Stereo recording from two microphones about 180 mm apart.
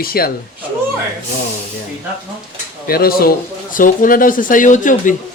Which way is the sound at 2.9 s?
55° left (ahead or behind).